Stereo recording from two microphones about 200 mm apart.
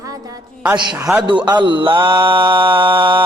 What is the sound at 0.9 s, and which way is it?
Mantra, 10° right (ahead or behind).